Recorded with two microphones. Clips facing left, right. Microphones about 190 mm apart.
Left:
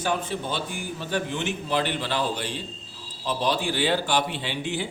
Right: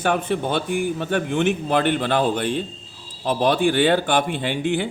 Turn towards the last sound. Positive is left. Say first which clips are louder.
# right 7 dB
turn(degrees=-55)  # may be behind; listen again after turning